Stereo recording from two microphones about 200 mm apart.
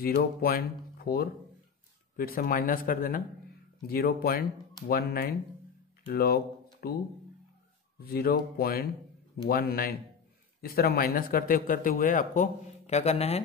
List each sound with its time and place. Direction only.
0.0 s speech: 50° left (ahead or behind)
8.0 s speech: 50° left (ahead or behind); by 13.4 s 35° left (ahead or behind)